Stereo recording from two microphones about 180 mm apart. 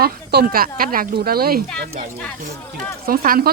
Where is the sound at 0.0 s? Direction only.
60° right (ahead or behind).